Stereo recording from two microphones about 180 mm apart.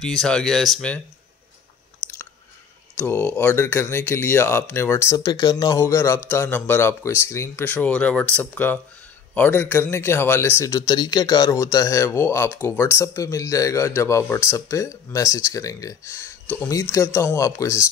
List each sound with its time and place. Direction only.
0.0 s speech: centre (ahead or behind)
2.0 s chewing: 10° right (ahead or behind)
3.0 s speech: 10° left (ahead or behind)